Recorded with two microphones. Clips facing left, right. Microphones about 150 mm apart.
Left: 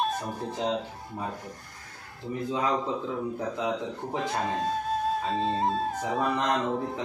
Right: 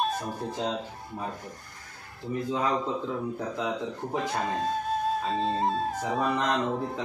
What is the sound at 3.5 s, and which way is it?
Speech, 20° left (ahead or behind).